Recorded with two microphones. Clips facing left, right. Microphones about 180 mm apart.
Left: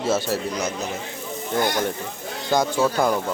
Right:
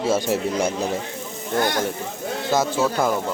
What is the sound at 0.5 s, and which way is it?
Speech, 30° right (ahead or behind).